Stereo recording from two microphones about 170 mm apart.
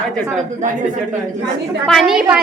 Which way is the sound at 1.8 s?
Centre (ahead or behind).